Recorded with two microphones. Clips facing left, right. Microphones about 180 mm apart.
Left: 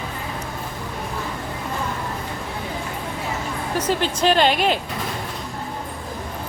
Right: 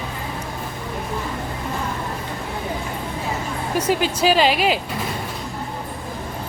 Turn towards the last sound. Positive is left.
turn(degrees=-5)  # may be behind; listen again after turning